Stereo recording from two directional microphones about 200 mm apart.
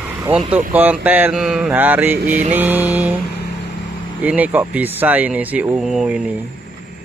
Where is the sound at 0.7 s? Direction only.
10° right (ahead or behind).